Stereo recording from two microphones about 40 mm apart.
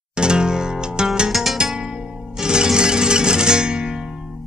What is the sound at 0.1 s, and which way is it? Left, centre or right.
Zither, right.